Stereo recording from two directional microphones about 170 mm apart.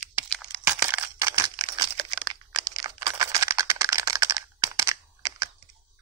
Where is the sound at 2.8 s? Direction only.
20° right (ahead or behind).